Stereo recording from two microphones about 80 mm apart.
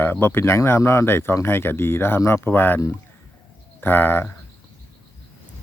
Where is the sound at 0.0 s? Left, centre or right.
Left.